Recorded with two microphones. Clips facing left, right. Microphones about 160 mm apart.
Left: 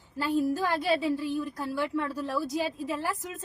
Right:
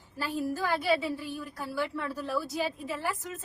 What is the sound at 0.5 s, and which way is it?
Speech, 20° left (ahead or behind).